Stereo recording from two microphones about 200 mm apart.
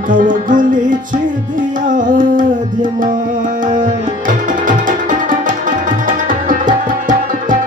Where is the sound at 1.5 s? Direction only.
40° right (ahead or behind).